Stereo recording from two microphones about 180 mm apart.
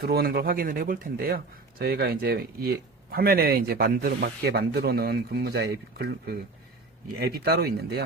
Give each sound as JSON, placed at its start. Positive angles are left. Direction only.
{"t": 0.0, "sound": "speech", "side_deg": -60}